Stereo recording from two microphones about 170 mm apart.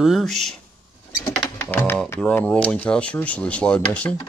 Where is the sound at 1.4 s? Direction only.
15° left (ahead or behind).